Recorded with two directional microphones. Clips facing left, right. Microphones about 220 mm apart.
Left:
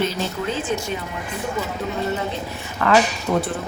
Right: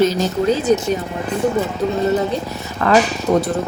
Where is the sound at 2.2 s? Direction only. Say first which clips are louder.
Right 7 dB; 35° right (ahead or behind).